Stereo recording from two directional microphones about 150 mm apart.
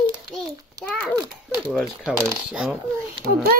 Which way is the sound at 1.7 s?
Centre (ahead or behind).